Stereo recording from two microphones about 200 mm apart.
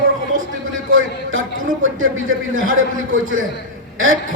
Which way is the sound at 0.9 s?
80° right.